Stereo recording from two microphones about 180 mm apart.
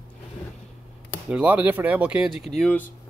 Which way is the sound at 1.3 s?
5° right (ahead or behind).